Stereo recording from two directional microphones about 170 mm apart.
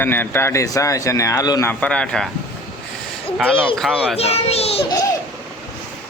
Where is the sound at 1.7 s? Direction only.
5° left (ahead or behind).